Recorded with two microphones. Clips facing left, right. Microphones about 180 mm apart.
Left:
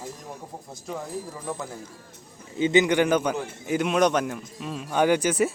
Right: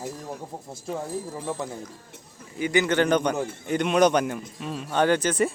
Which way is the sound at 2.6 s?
20° left (ahead or behind).